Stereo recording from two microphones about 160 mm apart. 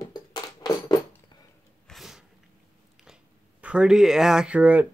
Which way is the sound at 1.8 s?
Centre (ahead or behind).